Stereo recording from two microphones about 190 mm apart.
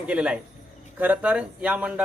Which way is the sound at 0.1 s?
5° right (ahead or behind).